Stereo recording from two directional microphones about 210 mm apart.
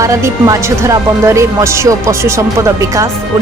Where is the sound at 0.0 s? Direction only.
15° right (ahead or behind).